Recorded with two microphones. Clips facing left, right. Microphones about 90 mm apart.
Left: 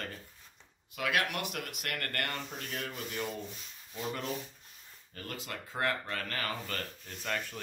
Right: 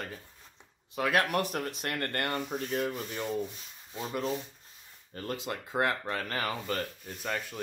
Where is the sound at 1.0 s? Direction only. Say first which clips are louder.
Right 5 dB; 35° right (ahead or behind); by 2.9 s 20° right (ahead or behind).